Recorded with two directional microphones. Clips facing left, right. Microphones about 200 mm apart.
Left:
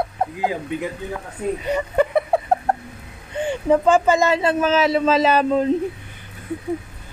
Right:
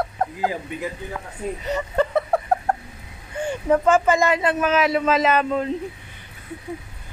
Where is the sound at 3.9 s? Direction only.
30° left (ahead or behind).